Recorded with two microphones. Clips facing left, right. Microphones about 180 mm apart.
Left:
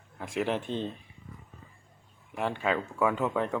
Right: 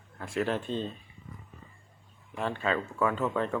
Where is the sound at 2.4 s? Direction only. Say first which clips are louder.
Left 1 dB; 15° left (ahead or behind).